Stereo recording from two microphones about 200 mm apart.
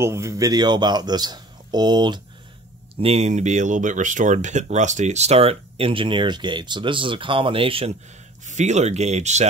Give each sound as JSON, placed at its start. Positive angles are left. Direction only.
{"t": 0.0, "sound": "a man's voice", "side_deg": -15}